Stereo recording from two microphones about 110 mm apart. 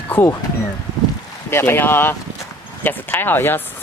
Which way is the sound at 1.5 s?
20° left (ahead or behind).